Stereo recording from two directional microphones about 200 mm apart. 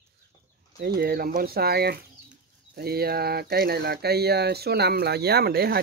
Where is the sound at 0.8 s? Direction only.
50° right (ahead or behind).